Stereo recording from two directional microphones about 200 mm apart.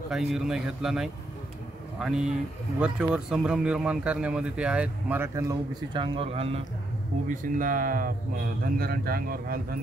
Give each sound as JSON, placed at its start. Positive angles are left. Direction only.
{"t": 0.1, "sound": "speech", "side_deg": 0}
{"t": 7.2, "sound": "speech", "side_deg": -40}